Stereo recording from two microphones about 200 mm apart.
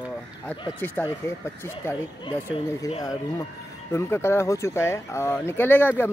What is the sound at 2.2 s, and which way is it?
Speech, 25° left (ahead or behind).